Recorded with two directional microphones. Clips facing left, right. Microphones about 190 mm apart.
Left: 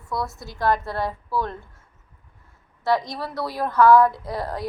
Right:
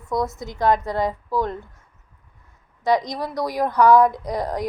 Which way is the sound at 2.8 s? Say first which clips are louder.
Right 2 dB; 20° right (ahead or behind).